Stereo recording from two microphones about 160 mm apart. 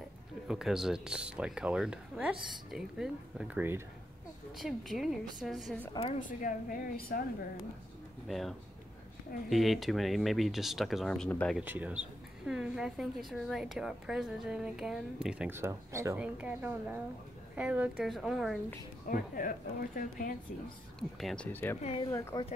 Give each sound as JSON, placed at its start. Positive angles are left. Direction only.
{"t": 0.5, "sound": "a woman's voice", "side_deg": 0}
{"t": 4.6, "sound": "a woman's voice", "side_deg": 0}
{"t": 6.1, "sound": "a woman's voice", "side_deg": 55}
{"t": 8.3, "sound": "a woman's voice", "side_deg": 0}
{"t": 11.6, "sound": "a woman's voice", "side_deg": -10}
{"t": 19.0, "sound": "a woman's voice", "side_deg": 65}
{"t": 21.2, "sound": "a woman's voice", "side_deg": 0}
{"t": 21.5, "sound": "speech", "side_deg": 10}